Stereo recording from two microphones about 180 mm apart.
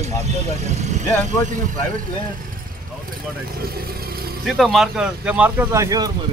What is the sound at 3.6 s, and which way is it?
Speech, 55° right (ahead or behind).